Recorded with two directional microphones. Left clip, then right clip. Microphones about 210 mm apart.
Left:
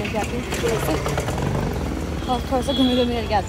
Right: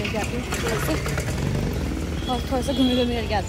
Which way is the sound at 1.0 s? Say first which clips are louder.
Left 4 dB; 10° right (ahead or behind).